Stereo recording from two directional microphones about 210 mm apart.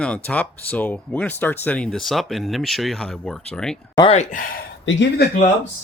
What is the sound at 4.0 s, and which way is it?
Speech, 25° left (ahead or behind).